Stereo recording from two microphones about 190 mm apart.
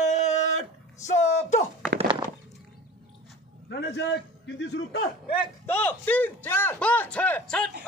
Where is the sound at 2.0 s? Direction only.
25° right (ahead or behind).